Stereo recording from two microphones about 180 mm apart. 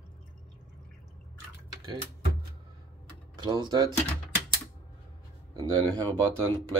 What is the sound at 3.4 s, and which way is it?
Speech, 25° right (ahead or behind).